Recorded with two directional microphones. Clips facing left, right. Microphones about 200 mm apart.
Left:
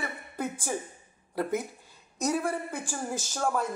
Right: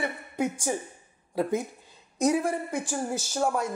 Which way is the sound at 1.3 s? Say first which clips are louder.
Right 3 dB; 15° right (ahead or behind).